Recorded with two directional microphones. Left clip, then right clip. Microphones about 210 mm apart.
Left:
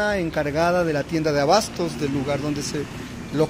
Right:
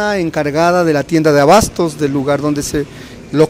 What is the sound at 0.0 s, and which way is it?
Speech, 50° right (ahead or behind).